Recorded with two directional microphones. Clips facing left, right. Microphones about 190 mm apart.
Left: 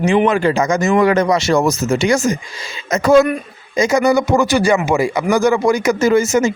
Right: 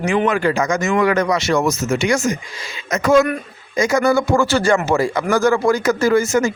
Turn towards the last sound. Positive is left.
turn(degrees=20)  # may be behind; listen again after turning